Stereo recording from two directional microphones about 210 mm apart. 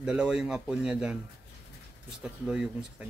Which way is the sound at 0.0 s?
5° right (ahead or behind).